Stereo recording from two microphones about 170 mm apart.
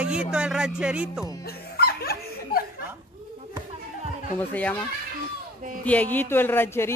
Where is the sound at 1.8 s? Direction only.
65° left (ahead or behind).